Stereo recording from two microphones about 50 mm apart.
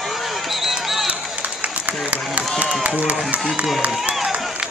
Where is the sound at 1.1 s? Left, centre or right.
Right.